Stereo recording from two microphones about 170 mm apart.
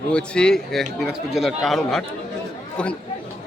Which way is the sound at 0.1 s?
5° left (ahead or behind).